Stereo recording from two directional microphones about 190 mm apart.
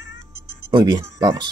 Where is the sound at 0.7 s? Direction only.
25° right (ahead or behind).